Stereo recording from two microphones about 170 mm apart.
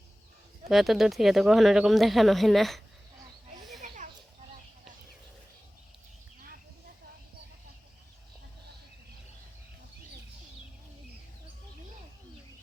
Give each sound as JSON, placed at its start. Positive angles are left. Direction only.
{"t": 0.7, "sound": "speech", "side_deg": 0}
{"t": 3.8, "sound": "children playing", "side_deg": -45}